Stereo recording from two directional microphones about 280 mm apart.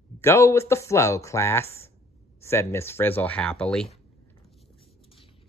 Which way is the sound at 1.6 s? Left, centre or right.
Left.